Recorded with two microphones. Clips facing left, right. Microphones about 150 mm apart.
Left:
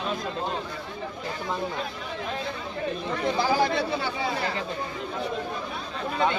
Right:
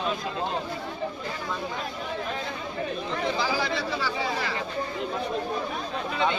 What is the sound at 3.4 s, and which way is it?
Speech, 50° left (ahead or behind).